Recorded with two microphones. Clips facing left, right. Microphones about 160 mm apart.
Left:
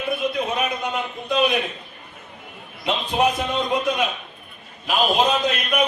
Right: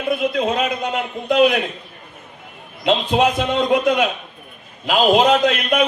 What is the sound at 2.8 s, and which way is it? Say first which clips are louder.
A man's voice: right 4 dB; 90° right.